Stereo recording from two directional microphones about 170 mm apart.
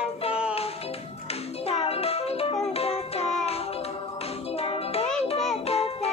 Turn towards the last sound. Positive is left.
turn(degrees=35)  # may be behind; listen again after turning